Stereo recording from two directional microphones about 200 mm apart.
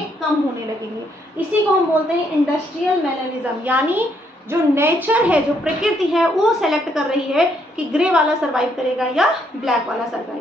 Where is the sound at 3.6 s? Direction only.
10° right (ahead or behind).